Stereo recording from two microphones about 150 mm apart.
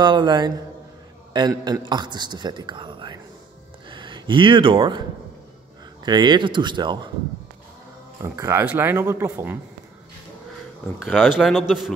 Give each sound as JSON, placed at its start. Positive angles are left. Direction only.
{"t": 0.0, "sound": "a man's voice", "side_deg": -30}
{"t": 6.0, "sound": "speech", "side_deg": -30}
{"t": 8.2, "sound": "speech", "side_deg": -20}
{"t": 11.1, "sound": "a man's voice", "side_deg": -5}